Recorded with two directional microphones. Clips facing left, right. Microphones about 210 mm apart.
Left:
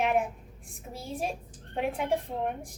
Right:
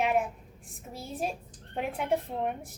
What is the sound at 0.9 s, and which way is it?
A woman's voice, centre (ahead or behind).